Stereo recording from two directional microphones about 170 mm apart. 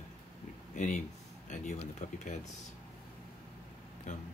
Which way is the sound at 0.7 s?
45° left (ahead or behind).